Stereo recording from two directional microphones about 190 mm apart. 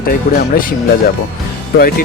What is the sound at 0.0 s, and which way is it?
Speech, 50° left (ahead or behind).